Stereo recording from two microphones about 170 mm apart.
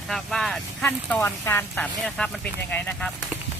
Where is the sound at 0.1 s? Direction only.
Centre (ahead or behind).